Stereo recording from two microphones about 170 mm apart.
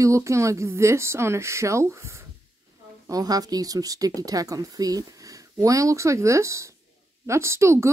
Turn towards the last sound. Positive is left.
turn(degrees=-15)  # may be behind; listen again after turning